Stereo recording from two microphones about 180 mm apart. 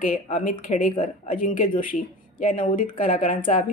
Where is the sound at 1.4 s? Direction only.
45° left (ahead or behind).